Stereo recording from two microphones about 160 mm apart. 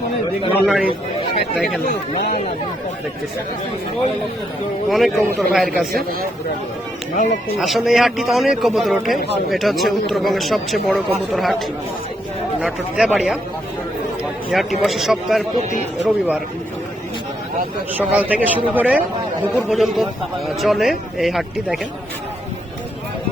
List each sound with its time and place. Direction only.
0.6 s a man's voice: centre (ahead or behind)
4.9 s a man's voice: centre (ahead or behind)
5.9 s speech: 70° right (ahead or behind)
7.1 s speech: 55° left (ahead or behind)
7.6 s a man's voice: centre (ahead or behind)
12.6 s a man's voice: 5° right (ahead or behind)
14.5 s a man's voice: centre (ahead or behind)
17.9 s a man's voice: 10° right (ahead or behind)